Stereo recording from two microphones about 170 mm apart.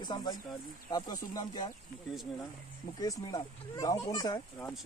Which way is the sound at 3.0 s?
20° left (ahead or behind).